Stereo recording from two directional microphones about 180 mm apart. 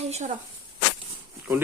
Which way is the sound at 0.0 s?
40° right (ahead or behind).